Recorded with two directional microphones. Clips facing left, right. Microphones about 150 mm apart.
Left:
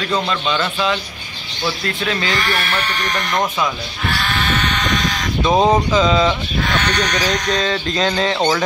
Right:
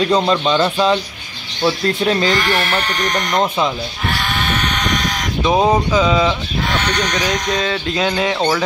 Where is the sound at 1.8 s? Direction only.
30° right (ahead or behind).